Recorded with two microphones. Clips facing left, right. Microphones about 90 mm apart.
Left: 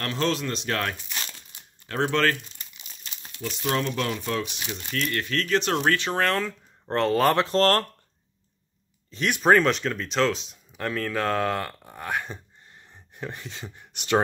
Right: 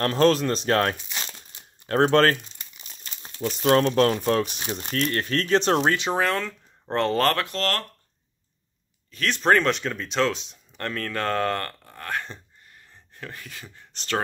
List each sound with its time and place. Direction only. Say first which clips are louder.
0.0 s speech: right 7 dB; 45° right (ahead or behind)
3.0 s crumpling: right 6 dB; 35° right (ahead or behind)
3.6 s speech: right 7 dB; 60° right (ahead or behind)
3.9 s speech: right 7 dB; 45° right (ahead or behind)
5.8 s speech: right 1 dB; 20° right (ahead or behind)
6.2 s speech: even; centre (ahead or behind)
7.3 s speech: left 6 dB; 35° left (ahead or behind)
9.3 s speech: left 1 dB; 5° left (ahead or behind)
12.6 s a sound: left 1 dB; 20° left (ahead or behind)